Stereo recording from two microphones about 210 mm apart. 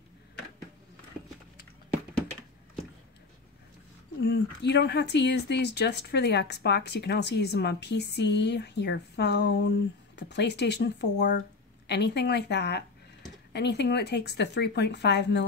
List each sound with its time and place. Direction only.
4.2 s speech: 50° left (ahead or behind)